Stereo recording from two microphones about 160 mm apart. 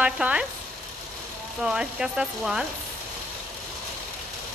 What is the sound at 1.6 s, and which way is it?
Speech, 5° right (ahead or behind).